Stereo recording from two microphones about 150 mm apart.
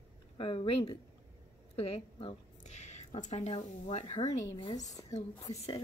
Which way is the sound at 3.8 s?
50° left (ahead or behind).